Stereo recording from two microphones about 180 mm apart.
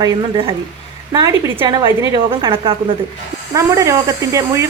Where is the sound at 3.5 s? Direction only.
15° right (ahead or behind).